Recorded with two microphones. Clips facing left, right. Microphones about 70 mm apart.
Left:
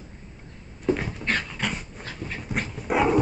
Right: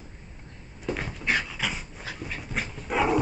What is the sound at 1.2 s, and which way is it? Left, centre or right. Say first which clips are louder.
Dog: right 4 dB; centre.